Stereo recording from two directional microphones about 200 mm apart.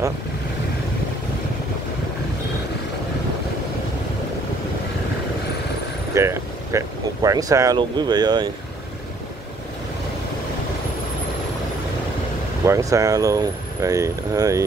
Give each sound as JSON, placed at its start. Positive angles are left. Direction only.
{"t": 6.1, "sound": "speech", "side_deg": -15}
{"t": 12.6, "sound": "speech", "side_deg": -15}